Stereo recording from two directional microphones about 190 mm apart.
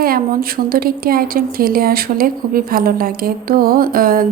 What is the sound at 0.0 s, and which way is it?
A woman's voice, 50° right (ahead or behind).